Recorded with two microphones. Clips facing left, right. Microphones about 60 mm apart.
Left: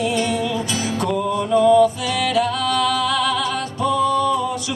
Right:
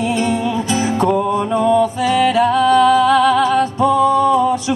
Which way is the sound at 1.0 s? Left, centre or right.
Right.